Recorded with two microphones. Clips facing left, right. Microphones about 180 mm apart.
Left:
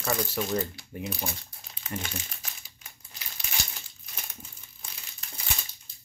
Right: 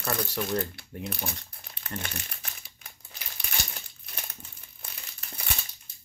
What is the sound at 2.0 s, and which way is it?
Crumpling, 60° right (ahead or behind).